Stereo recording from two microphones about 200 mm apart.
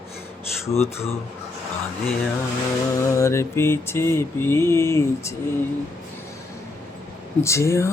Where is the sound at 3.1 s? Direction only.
15° left (ahead or behind).